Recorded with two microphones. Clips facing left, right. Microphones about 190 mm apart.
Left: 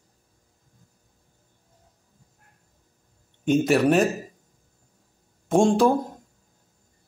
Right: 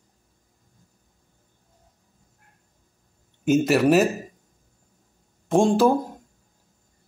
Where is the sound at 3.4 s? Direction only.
5° right (ahead or behind).